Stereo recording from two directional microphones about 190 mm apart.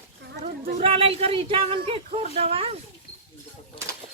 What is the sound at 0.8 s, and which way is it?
Speech, 30° right (ahead or behind).